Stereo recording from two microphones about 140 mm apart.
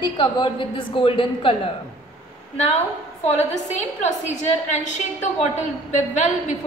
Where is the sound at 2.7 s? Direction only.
50° left (ahead or behind).